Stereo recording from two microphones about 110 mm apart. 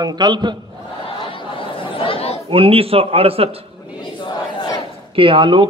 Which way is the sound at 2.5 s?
55° right (ahead or behind).